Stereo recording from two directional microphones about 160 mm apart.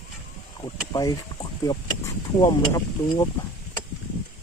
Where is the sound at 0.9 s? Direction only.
25° left (ahead or behind).